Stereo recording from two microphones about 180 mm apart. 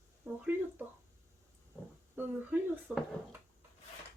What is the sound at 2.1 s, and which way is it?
Speech, 10° right (ahead or behind).